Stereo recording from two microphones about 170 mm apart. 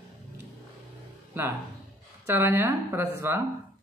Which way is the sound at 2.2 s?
15° right (ahead or behind).